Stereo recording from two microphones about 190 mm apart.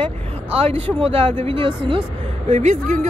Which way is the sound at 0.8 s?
30° right (ahead or behind).